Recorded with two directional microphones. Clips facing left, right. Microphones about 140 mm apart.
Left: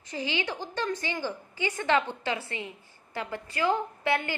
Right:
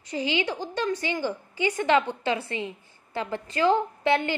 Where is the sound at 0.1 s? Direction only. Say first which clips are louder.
Right 5 dB; 20° right (ahead or behind).